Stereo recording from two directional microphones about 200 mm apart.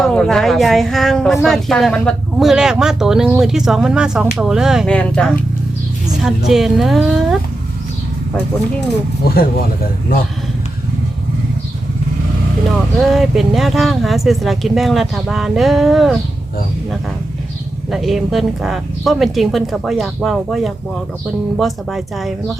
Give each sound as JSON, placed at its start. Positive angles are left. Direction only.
{"t": 0.0, "sound": "speech", "side_deg": 5}
{"t": 9.2, "sound": "speech", "side_deg": 50}
{"t": 13.0, "sound": "speech", "side_deg": 0}
{"t": 17.9, "sound": "speech", "side_deg": 0}